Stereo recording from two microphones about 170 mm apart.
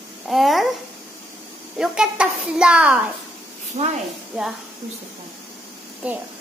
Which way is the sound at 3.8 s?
45° right (ahead or behind).